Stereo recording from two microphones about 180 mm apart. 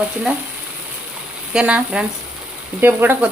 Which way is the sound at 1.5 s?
5° right (ahead or behind).